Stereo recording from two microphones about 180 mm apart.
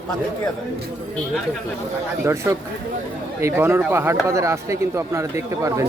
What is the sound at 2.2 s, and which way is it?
Speech, 15° right (ahead or behind).